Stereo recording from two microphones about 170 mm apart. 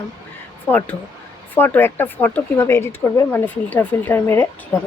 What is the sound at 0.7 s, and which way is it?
Speech, 10° left (ahead or behind).